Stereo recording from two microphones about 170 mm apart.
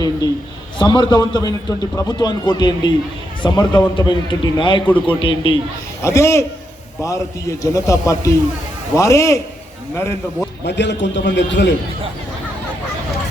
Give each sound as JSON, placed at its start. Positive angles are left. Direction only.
{"t": 0.8, "sound": "a man's voice", "side_deg": 25}
{"t": 6.0, "sound": "a man's voice", "side_deg": 15}
{"t": 10.7, "sound": "a man's voice", "side_deg": 90}